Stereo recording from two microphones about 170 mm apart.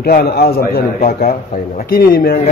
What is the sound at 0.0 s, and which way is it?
A man's voice, 70° left (ahead or behind).